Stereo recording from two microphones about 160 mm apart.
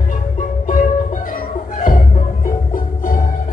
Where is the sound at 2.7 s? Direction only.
60° left (ahead or behind).